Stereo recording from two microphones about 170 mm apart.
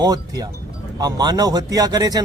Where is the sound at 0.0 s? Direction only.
20° right (ahead or behind).